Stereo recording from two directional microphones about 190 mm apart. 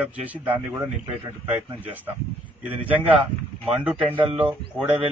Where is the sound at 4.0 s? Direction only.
30° right (ahead or behind).